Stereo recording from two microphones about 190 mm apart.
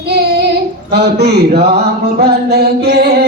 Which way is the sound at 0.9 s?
60° right (ahead or behind).